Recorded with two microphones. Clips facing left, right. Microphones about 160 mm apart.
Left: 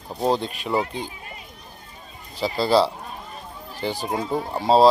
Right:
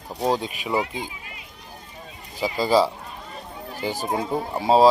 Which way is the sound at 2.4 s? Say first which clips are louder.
Even; 10° right (ahead or behind).